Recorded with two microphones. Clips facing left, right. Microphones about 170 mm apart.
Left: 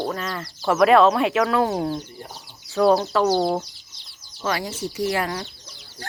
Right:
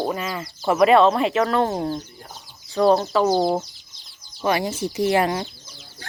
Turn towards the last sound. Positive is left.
turn(degrees=-20)  # may be behind; listen again after turning